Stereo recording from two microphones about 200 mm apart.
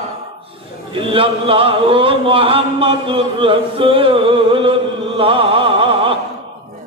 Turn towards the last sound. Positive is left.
turn(degrees=-25)  # may be behind; listen again after turning